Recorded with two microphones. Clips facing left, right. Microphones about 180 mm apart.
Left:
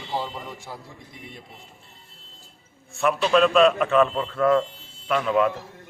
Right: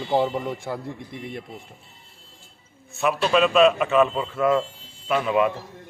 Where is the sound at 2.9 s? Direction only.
Centre (ahead or behind).